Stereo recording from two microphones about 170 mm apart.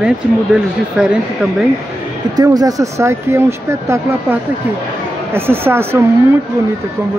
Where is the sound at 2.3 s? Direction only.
20° right (ahead or behind).